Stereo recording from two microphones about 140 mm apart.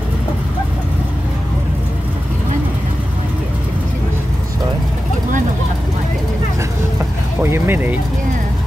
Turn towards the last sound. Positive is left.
turn(degrees=-15)  # may be behind; listen again after turning